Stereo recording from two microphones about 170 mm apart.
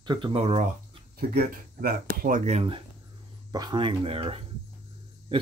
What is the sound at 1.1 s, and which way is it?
Speech, 65° right (ahead or behind).